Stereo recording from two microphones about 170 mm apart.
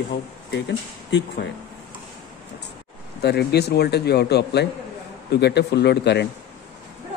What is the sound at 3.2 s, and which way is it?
A man's voice, 75° left (ahead or behind).